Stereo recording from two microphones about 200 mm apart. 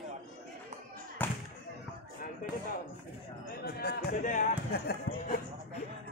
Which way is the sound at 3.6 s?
50° left (ahead or behind).